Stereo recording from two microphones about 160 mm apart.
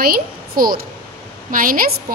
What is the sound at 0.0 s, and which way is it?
A child's voice, 65° right (ahead or behind).